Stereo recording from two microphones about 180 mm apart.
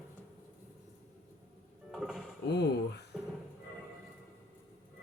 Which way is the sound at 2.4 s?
70° left (ahead or behind).